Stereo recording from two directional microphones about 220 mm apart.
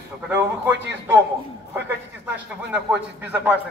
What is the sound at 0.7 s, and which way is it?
Speech, 55° right (ahead or behind).